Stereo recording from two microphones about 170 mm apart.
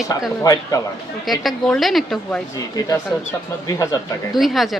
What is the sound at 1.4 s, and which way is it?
Speech, centre (ahead or behind).